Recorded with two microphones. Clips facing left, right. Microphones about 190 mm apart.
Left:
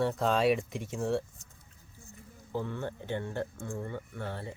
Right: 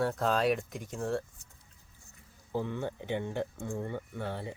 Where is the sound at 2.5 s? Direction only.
15° right (ahead or behind).